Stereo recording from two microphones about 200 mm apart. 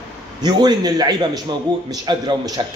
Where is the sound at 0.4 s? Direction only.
20° right (ahead or behind).